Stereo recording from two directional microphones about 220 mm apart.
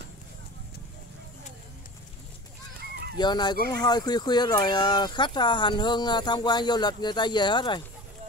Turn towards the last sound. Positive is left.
turn(degrees=20)  # may be behind; listen again after turning